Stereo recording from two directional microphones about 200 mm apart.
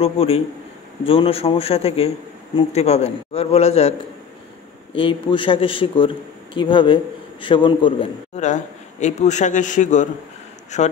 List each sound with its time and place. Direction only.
0.0 s a man's voice: 30° left (ahead or behind)
4.9 s a man's voice: 25° left (ahead or behind)